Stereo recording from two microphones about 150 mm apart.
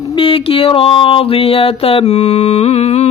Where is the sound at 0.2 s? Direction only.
40° left (ahead or behind).